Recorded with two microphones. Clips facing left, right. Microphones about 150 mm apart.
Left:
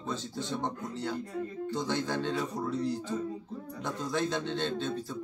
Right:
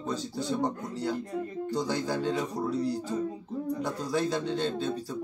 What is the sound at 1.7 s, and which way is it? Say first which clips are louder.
Speech: right 3 dB; 35° right (ahead or behind).